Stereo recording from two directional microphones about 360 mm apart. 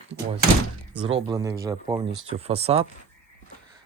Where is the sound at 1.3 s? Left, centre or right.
Centre.